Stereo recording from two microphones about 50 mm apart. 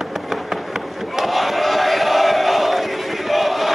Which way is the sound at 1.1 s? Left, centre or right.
Centre.